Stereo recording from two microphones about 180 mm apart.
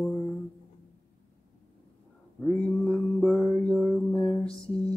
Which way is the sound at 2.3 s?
10° left (ahead or behind).